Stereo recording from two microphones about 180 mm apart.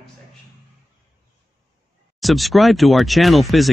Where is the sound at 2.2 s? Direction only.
Centre (ahead or behind).